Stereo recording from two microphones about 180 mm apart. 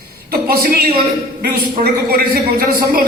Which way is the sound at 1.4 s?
55° right (ahead or behind).